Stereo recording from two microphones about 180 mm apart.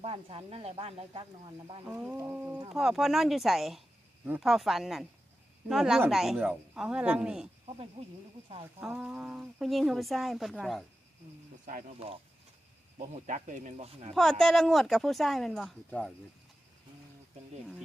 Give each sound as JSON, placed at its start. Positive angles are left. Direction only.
{"t": 0.0, "sound": "speech", "side_deg": -30}
{"t": 1.8, "sound": "speech", "side_deg": -5}
{"t": 8.8, "sound": "speech", "side_deg": -5}
{"t": 12.0, "sound": "speech", "side_deg": -30}
{"t": 13.0, "sound": "speech", "side_deg": -45}
{"t": 14.1, "sound": "speech", "side_deg": 0}